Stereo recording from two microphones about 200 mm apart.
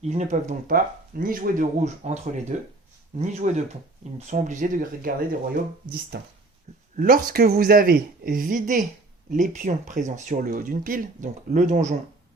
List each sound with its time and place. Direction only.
0.0 s speech: 35° right (ahead or behind)